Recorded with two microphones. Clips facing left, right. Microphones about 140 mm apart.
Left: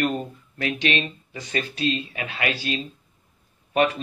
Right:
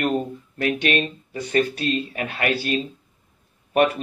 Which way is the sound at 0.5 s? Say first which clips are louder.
Right 3 dB; 50° right (ahead or behind).